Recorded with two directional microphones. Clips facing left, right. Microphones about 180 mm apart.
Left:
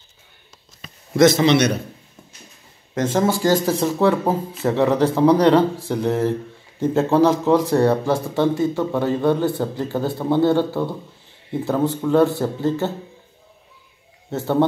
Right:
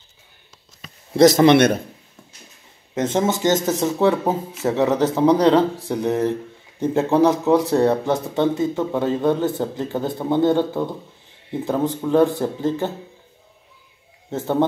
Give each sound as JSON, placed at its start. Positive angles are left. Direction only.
{"t": 1.1, "sound": "speech", "side_deg": -40}
{"t": 1.4, "sound": "a man's voice", "side_deg": -55}
{"t": 3.0, "sound": "speech", "side_deg": -25}
{"t": 4.2, "sound": "speech", "side_deg": 10}
{"t": 4.6, "sound": "a man's voice", "side_deg": -20}
{"t": 14.3, "sound": "a man's voice", "side_deg": -15}